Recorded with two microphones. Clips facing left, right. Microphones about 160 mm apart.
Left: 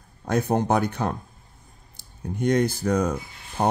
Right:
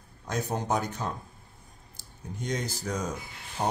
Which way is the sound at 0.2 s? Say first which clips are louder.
Left 9 dB; 60° left (ahead or behind).